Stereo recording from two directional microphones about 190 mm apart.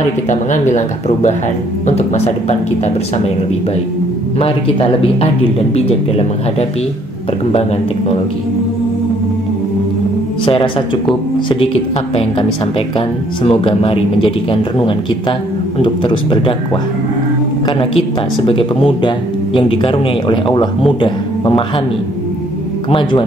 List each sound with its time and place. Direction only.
0.3 s speech: 40° left (ahead or behind)
4.4 s speech: 30° left (ahead or behind)
10.4 s speech: 25° left (ahead or behind)
17.6 s speech: 30° left (ahead or behind)
22.8 s speech: 25° left (ahead or behind)